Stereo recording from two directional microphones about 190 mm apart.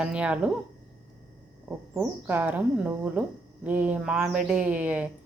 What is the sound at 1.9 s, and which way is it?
Speech, 10° right (ahead or behind).